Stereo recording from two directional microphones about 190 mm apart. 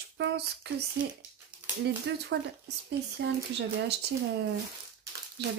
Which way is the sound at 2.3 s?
65° right (ahead or behind).